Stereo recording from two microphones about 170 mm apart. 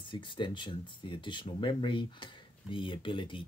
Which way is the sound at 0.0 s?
30° left (ahead or behind).